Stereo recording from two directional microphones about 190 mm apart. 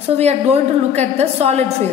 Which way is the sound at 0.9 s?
35° right (ahead or behind).